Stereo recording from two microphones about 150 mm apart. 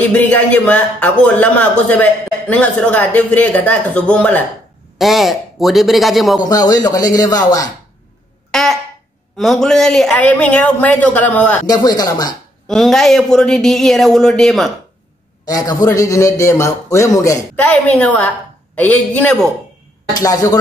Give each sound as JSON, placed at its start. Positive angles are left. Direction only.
{"t": 0.1, "sound": "a man's voice", "side_deg": 10}
{"t": 4.9, "sound": "speech", "side_deg": 0}
{"t": 6.7, "sound": "a man's voice", "side_deg": 25}
{"t": 8.5, "sound": "a sound", "side_deg": 0}
{"t": 9.4, "sound": "a man's voice", "side_deg": 0}
{"t": 11.6, "sound": "a man's voice", "side_deg": 25}
{"t": 12.6, "sound": "speech", "side_deg": 0}
{"t": 15.4, "sound": "a man's voice", "side_deg": 25}
{"t": 17.6, "sound": "a man's voice", "side_deg": 10}
{"t": 20.2, "sound": "a man's voice", "side_deg": 25}